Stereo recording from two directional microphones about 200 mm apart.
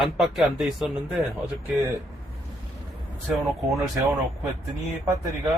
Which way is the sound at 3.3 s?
Centre (ahead or behind).